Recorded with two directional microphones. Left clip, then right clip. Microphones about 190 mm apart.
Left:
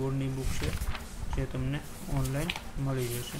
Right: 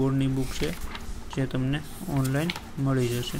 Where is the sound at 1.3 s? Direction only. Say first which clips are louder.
Right 7 dB; 20° right (ahead or behind).